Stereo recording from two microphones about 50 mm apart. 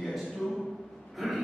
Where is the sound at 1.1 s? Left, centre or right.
Centre.